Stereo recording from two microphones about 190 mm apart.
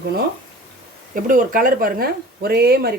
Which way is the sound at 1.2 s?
45° right (ahead or behind).